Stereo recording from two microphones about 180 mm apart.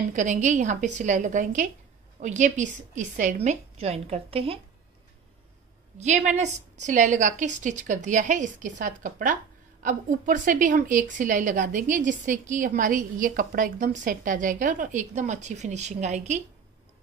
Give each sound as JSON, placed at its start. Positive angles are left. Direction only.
{"t": 0.1, "sound": "a woman's voice", "side_deg": -45}
{"t": 5.9, "sound": "a woman's voice", "side_deg": -40}